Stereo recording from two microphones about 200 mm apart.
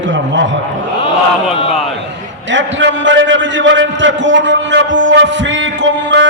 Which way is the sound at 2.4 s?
70° right (ahead or behind).